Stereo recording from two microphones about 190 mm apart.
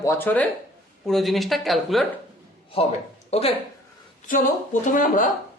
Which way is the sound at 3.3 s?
35° left (ahead or behind).